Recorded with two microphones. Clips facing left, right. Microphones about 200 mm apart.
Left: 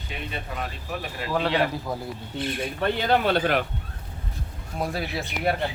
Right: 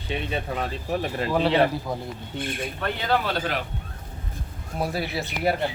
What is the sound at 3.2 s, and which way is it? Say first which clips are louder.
Speech: left 5 dB; 55° left (ahead or behind).